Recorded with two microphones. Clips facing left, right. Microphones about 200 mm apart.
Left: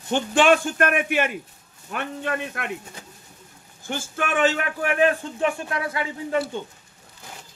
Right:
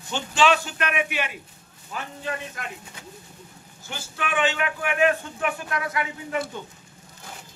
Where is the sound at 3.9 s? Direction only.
50° left (ahead or behind); by 6.4 s 30° left (ahead or behind).